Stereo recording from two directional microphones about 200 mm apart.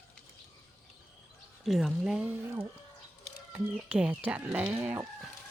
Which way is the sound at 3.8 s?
5° right (ahead or behind).